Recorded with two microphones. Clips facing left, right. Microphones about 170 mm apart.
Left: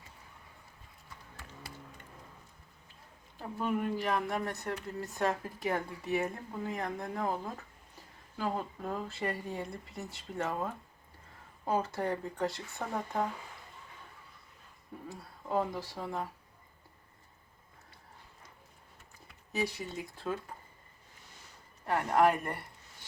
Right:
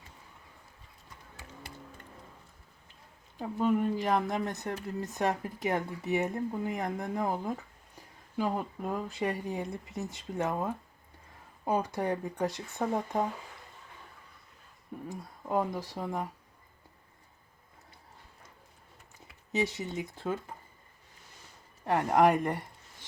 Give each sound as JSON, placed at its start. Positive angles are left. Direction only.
{"t": 3.3, "sound": "speech", "side_deg": -25}
{"t": 15.1, "sound": "speech", "side_deg": -15}
{"t": 19.5, "sound": "speech", "side_deg": -20}
{"t": 22.3, "sound": "speech", "side_deg": -15}